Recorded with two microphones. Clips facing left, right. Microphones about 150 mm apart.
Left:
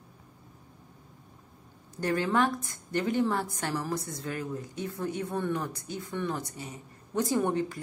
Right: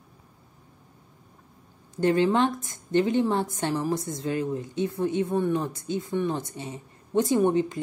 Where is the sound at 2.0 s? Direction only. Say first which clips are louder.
Right 5 dB; 20° right (ahead or behind).